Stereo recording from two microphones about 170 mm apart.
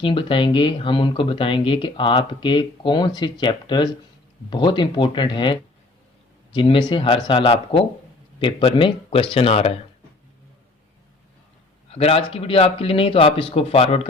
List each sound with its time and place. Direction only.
0.0 s a man's voice: 30° left (ahead or behind)
11.9 s a man's voice: 35° left (ahead or behind)